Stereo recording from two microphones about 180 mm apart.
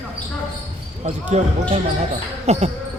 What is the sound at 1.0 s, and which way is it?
Speech, 40° right (ahead or behind).